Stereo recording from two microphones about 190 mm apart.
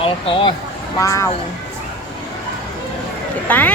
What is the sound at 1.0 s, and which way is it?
Speech, 15° left (ahead or behind).